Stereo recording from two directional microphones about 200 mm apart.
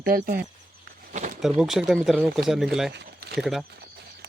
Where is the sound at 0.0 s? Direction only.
45° right (ahead or behind).